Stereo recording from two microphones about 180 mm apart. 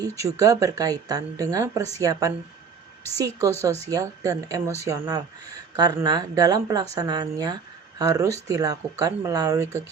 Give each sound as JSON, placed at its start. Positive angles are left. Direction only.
{"t": 0.0, "sound": "speech", "side_deg": -20}